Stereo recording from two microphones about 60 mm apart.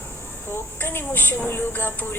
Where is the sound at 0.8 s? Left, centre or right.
Left.